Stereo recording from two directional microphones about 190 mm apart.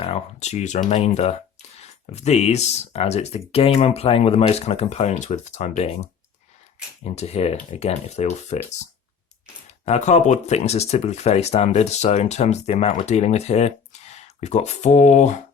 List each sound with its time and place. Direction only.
0.0 s speech: 35° left (ahead or behind)
9.6 s speech: 35° left (ahead or behind)